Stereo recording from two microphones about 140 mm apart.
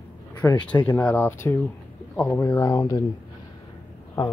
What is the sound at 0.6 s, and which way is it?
Speech, 10° left (ahead or behind).